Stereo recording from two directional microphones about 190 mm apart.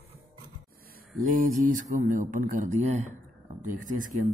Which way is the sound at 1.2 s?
45° right (ahead or behind).